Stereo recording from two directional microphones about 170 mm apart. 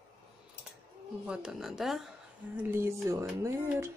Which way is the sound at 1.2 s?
5° right (ahead or behind).